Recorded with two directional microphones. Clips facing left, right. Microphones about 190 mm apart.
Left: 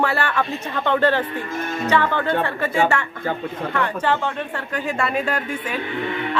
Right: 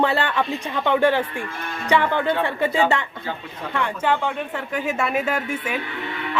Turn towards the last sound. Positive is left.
turn(degrees=-10)  # may be behind; listen again after turning